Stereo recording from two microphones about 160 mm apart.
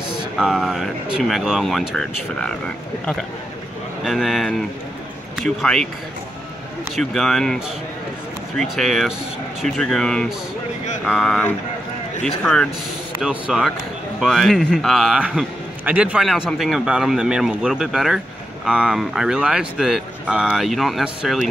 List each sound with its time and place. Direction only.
0.1 s a man's voice: 5° right (ahead or behind)
4.0 s a man's voice: centre (ahead or behind)
7.0 s a man's voice: centre (ahead or behind)
13.2 s a man's voice: 5° right (ahead or behind)